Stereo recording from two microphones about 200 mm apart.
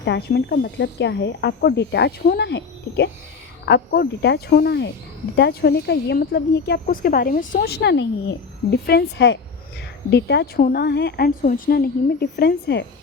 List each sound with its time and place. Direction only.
0.0 s speech: 55° left (ahead or behind)
11.4 s speech: 45° left (ahead or behind)